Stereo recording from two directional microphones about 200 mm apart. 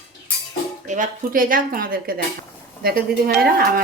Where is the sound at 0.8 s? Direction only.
40° right (ahead or behind).